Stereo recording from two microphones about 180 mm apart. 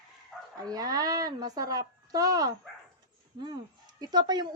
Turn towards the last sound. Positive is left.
turn(degrees=-25)  # may be behind; listen again after turning